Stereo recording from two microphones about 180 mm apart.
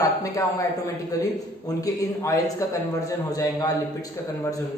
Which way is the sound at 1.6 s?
20° left (ahead or behind).